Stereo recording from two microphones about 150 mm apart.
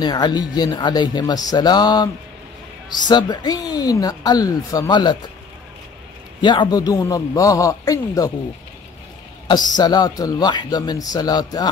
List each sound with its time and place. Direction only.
0.0 s speech: 25° left (ahead or behind)
3.1 s speech: 30° left (ahead or behind)
6.4 s speech: 30° left (ahead or behind)
9.8 s speech: 25° left (ahead or behind)